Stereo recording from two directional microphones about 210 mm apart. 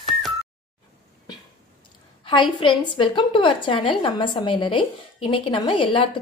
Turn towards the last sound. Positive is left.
turn(degrees=25)  # may be behind; listen again after turning